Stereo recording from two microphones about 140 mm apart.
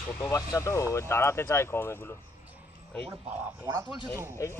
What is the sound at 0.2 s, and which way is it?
Speech, 25° left (ahead or behind).